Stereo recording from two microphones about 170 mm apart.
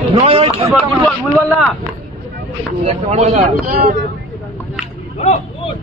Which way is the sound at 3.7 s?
60° right (ahead or behind).